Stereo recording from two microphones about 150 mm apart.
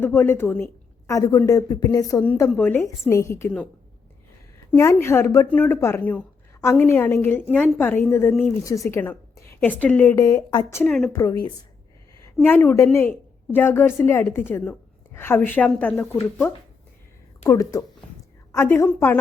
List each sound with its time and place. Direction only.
0.0 s a woman's voice: 15° left (ahead or behind)
2.2 s a woman's voice: 10° left (ahead or behind)
4.7 s a woman's voice: 15° left (ahead or behind)
10.8 s a woman's voice: centre (ahead or behind)
12.2 s a woman's voice: 10° left (ahead or behind)